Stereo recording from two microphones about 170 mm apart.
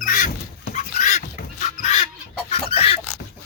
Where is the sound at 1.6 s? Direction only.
40° left (ahead or behind).